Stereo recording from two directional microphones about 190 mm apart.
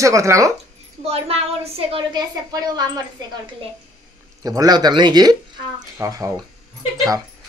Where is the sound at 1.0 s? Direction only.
30° right (ahead or behind).